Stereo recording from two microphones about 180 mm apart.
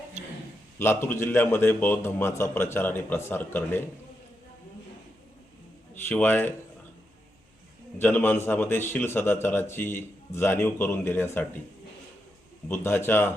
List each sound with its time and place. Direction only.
0.8 s a man's voice: 15° left (ahead or behind)
5.9 s a man's voice: 10° left (ahead or behind)
7.9 s a man's voice: 10° left (ahead or behind)
12.6 s a man's voice: 10° left (ahead or behind)